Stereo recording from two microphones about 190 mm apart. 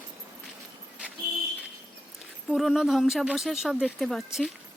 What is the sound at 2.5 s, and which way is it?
Speech, centre (ahead or behind).